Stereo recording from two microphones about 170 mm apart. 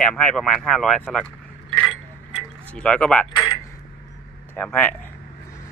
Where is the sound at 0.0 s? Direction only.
5° left (ahead or behind).